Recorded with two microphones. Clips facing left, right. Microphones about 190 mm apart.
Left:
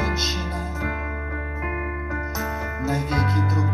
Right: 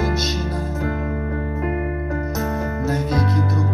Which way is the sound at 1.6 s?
35° right (ahead or behind).